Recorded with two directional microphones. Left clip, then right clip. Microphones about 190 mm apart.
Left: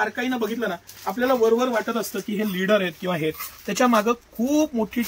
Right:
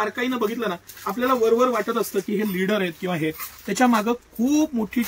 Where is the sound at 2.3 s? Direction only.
30° left (ahead or behind).